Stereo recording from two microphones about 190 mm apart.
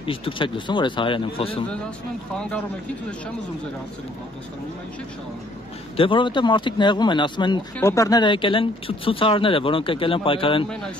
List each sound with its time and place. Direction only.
0.0 s speech: 30° left (ahead or behind)
5.9 s speech: 25° left (ahead or behind)